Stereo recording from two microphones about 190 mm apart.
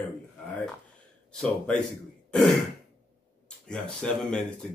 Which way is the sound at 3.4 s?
5° left (ahead or behind).